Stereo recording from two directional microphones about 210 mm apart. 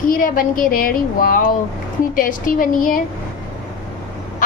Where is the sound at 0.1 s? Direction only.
40° left (ahead or behind).